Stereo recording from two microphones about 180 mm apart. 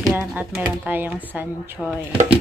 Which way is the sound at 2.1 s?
30° right (ahead or behind).